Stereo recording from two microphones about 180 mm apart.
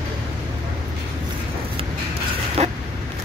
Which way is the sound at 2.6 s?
35° right (ahead or behind).